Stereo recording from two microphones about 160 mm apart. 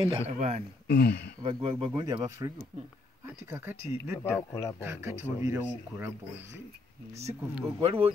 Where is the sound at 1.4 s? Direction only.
35° right (ahead or behind).